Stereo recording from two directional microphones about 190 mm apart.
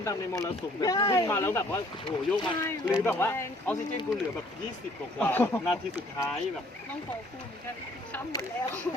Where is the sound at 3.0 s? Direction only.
10° left (ahead or behind).